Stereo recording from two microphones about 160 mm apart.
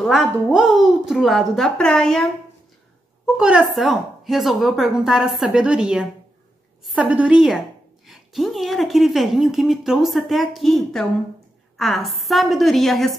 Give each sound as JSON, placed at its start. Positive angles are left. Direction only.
{"t": 0.0, "sound": "a woman's voice", "side_deg": 0}
{"t": 3.3, "sound": "a woman's voice", "side_deg": -5}